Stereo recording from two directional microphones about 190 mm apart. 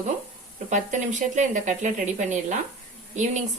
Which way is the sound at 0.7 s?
40° right (ahead or behind).